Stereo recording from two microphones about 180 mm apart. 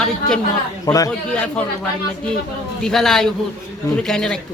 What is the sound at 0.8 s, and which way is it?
Speech, 20° left (ahead or behind).